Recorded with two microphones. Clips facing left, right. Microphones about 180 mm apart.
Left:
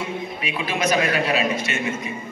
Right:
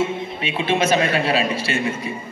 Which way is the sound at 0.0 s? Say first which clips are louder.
Right 5 dB; 25° right (ahead or behind).